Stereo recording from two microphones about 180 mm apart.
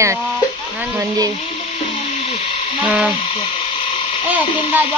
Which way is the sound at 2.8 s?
5° right (ahead or behind).